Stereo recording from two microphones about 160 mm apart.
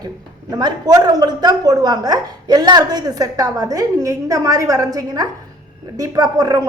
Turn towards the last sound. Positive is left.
turn(degrees=-25)  # may be behind; listen again after turning